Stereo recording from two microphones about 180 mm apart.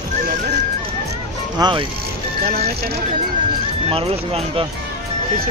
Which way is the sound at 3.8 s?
35° right (ahead or behind).